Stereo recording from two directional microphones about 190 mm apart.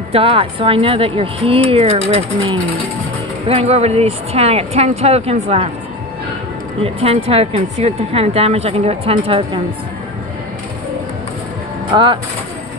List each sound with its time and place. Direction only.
0.1 s speech: 30° right (ahead or behind)
6.8 s speech: 35° right (ahead or behind)
11.9 s speech: 25° right (ahead or behind)